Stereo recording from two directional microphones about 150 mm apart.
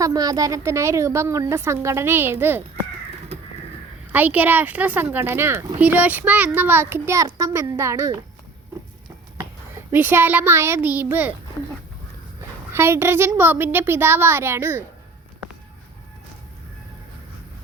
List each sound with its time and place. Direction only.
0.0 s a woman's voice: 25° right (ahead or behind)
4.1 s a child's voice: 10° right (ahead or behind)
9.9 s a child's voice: 15° right (ahead or behind)
12.7 s a child's voice: 15° right (ahead or behind)